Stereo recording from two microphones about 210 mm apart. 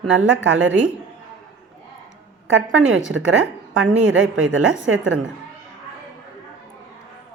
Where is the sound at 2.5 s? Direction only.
60° right (ahead or behind).